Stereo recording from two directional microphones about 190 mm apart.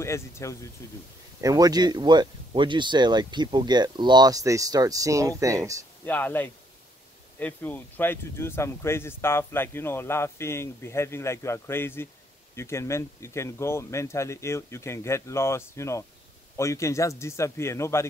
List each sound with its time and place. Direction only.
0.0 s speech: 15° left (ahead or behind)
1.4 s speech: 20° right (ahead or behind)
6.0 s speech: 10° left (ahead or behind)